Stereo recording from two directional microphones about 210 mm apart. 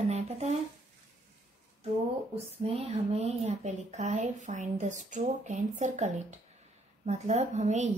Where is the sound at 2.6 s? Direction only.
30° right (ahead or behind).